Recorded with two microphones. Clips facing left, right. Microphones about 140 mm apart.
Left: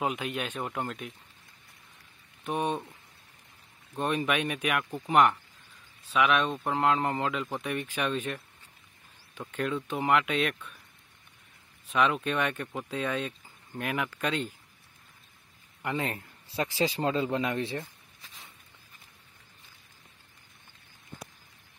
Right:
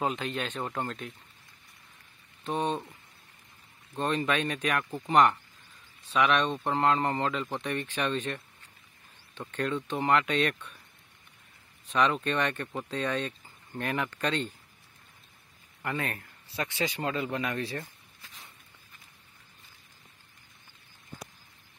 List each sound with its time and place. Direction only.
0.0 s speech: 10° left (ahead or behind)
2.4 s speech: 10° left (ahead or behind)
3.9 s speech: 10° left (ahead or behind)
9.4 s speech: 5° left (ahead or behind)
11.9 s speech: 5° left (ahead or behind)
15.8 s speech: 20° left (ahead or behind)
17.7 s a sound: centre (ahead or behind)